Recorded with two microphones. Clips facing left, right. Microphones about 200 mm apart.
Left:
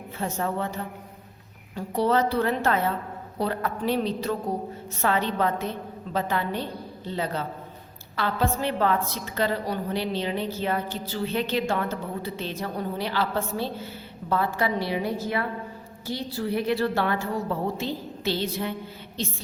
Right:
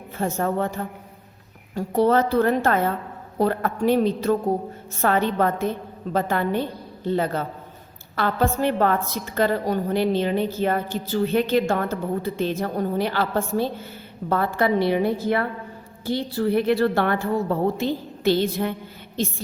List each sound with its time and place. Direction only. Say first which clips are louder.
0.2 s a woman's voice: right 5 dB; 45° right (ahead or behind)
8.1 s a woman's voice: right 4 dB; 50° right (ahead or behind)